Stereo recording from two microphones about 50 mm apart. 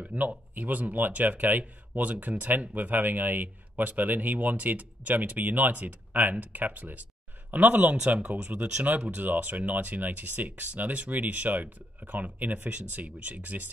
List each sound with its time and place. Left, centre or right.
0.0 s speech: right
9.1 s speech: right